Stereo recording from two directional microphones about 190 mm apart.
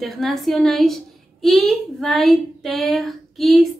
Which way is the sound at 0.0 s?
Centre (ahead or behind).